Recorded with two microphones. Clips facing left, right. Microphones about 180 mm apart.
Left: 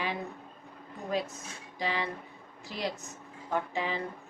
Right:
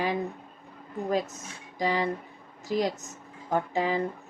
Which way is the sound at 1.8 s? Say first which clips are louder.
Right 6 dB; 45° right (ahead or behind).